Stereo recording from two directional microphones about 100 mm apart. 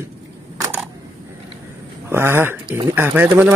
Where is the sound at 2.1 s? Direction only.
25° right (ahead or behind).